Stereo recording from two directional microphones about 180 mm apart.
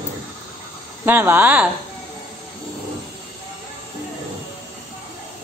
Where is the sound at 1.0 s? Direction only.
10° right (ahead or behind).